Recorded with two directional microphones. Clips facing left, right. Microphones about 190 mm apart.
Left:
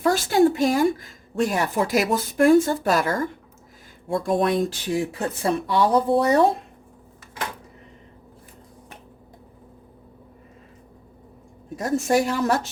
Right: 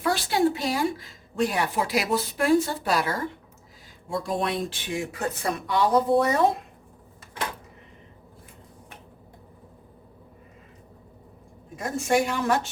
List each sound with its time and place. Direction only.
0.0 s speech: 45° left (ahead or behind)
11.8 s speech: 40° left (ahead or behind)